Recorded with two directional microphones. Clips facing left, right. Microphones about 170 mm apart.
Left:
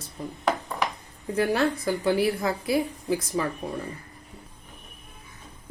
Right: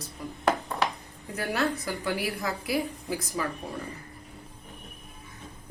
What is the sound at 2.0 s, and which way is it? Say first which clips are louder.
A woman's voice: left 7 dB; 30° left (ahead or behind).